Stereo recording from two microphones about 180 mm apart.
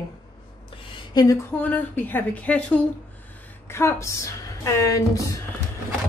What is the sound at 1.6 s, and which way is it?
A woman's voice, 10° left (ahead or behind).